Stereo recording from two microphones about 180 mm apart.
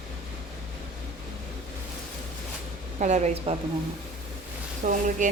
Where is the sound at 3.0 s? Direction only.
40° right (ahead or behind).